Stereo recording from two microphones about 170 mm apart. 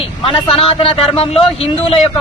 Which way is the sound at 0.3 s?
35° left (ahead or behind).